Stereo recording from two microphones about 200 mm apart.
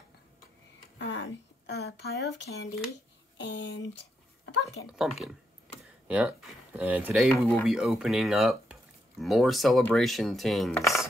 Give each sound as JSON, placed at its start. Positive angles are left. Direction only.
{"t": 0.9, "sound": "speech", "side_deg": 65}
{"t": 6.0, "sound": "speech", "side_deg": -5}
{"t": 7.2, "sound": "speech", "side_deg": 10}
{"t": 7.6, "sound": "speech", "side_deg": 0}